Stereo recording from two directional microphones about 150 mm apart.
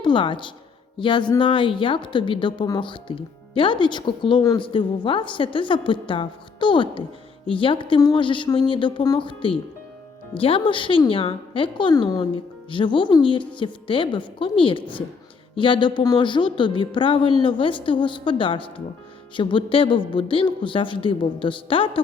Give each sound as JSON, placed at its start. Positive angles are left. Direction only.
{"t": 0.0, "sound": "a woman's voice", "side_deg": 35}